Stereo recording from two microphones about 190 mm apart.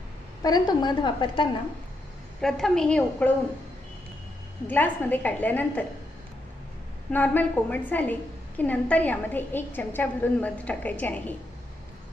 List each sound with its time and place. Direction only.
0.4 s a woman's voice: 20° left (ahead or behind)
2.4 s a woman's voice: centre (ahead or behind)
4.6 s a woman's voice: 10° left (ahead or behind)
7.1 s a woman's voice: 10° left (ahead or behind)